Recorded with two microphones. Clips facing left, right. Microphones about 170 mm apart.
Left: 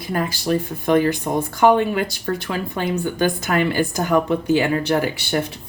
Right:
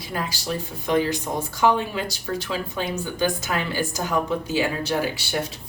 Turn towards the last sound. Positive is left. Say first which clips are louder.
# left 5 dB
turn(degrees=60)  # may be behind; listen again after turning